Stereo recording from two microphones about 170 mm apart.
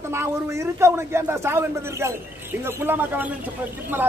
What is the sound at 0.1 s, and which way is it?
Speech, 15° right (ahead or behind).